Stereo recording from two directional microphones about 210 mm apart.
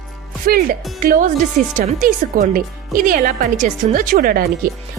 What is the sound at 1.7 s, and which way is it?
Speech, 40° right (ahead or behind).